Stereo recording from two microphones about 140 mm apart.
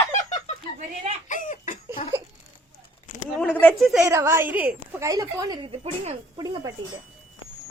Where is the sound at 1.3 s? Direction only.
65° left (ahead or behind).